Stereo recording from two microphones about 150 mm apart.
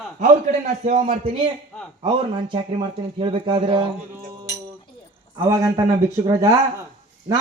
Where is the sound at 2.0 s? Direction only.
35° right (ahead or behind).